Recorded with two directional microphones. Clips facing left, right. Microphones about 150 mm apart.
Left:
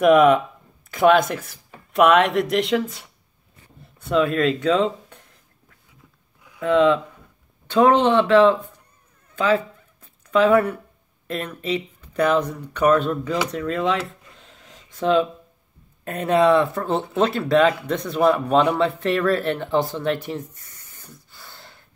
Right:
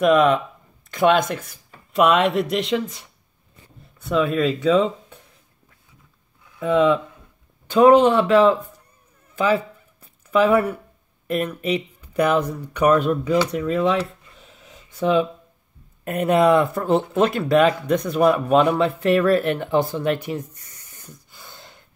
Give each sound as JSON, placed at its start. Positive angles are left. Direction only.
{"t": 0.0, "sound": "speech", "side_deg": 5}
{"t": 4.0, "sound": "speech", "side_deg": 0}
{"t": 6.6, "sound": "speech", "side_deg": -10}
{"t": 13.5, "sound": "a sound", "side_deg": -10}
{"t": 16.0, "sound": "speech", "side_deg": -10}
{"t": 20.5, "sound": "spray", "side_deg": -15}